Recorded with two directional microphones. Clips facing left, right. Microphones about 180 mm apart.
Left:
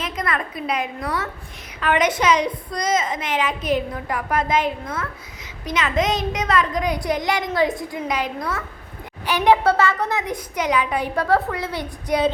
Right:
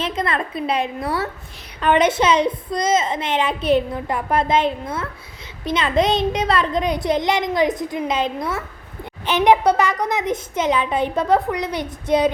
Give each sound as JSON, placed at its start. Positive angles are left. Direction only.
{"t": 0.0, "sound": "a woman's voice", "side_deg": -25}